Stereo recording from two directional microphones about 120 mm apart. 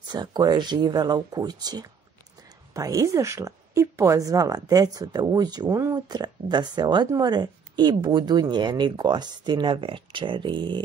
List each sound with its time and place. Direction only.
0.1 s a woman's voice: 35° right (ahead or behind)